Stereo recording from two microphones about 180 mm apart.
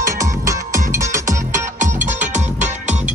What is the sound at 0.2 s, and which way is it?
Music, 15° right (ahead or behind).